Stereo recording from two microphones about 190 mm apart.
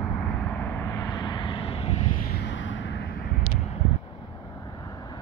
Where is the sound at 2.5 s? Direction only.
75° left (ahead or behind).